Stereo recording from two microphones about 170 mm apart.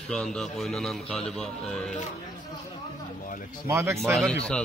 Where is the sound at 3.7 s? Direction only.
15° right (ahead or behind).